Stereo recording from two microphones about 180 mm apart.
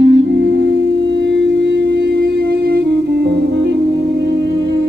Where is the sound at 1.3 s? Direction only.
85° right.